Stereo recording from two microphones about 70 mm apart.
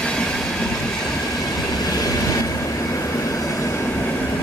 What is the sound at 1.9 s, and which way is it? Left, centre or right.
Train, left.